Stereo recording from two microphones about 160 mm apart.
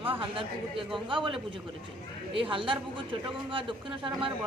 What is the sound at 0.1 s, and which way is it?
A woman's voice, 35° right (ahead or behind).